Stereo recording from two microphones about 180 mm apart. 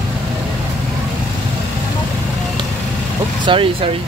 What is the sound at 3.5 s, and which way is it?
Speech, 30° right (ahead or behind).